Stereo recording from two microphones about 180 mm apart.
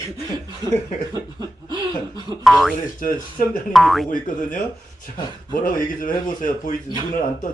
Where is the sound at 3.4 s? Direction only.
55° left (ahead or behind).